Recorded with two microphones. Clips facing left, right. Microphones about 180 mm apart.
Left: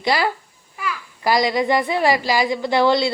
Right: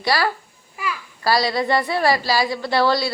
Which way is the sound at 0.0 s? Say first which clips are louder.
Left 1 dB; 20° left (ahead or behind).